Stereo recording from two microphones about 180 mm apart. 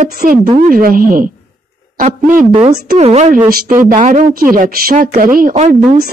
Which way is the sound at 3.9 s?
50° right (ahead or behind).